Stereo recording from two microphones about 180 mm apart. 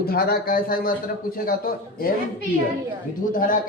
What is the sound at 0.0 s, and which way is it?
A man's voice, 55° left (ahead or behind).